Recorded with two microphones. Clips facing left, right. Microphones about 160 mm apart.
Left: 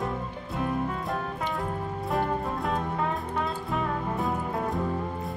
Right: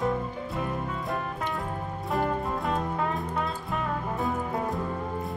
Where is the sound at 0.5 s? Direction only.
Centre (ahead or behind).